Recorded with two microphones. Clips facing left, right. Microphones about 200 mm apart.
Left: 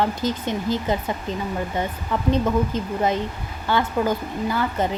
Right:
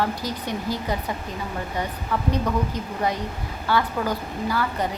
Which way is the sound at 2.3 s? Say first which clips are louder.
Left 6 dB; 25° left (ahead or behind).